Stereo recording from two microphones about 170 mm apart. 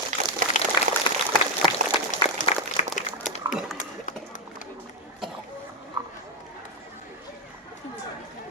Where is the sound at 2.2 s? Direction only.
30° left (ahead or behind).